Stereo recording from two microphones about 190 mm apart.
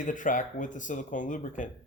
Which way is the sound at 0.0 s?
45° left (ahead or behind).